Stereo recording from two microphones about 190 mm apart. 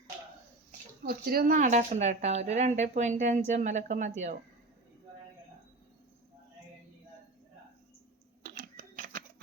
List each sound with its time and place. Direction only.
1.0 s a woman's voice: 55° right (ahead or behind)
8.4 s typewriter: 45° right (ahead or behind)